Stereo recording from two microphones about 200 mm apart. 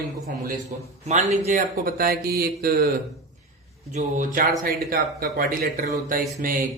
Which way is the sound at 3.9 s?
40° right (ahead or behind).